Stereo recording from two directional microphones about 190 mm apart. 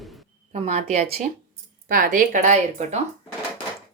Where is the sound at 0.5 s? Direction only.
40° right (ahead or behind).